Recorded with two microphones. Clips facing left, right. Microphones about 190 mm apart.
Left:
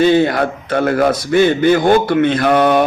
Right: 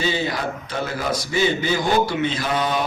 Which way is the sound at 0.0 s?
60° left (ahead or behind).